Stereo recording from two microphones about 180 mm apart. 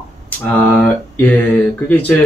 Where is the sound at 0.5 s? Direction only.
10° left (ahead or behind).